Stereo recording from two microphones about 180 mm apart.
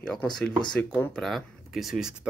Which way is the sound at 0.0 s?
5° left (ahead or behind).